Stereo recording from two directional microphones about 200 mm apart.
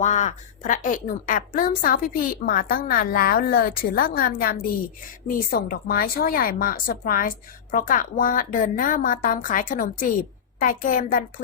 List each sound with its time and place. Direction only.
0.0 s a woman's voice: 35° left (ahead or behind)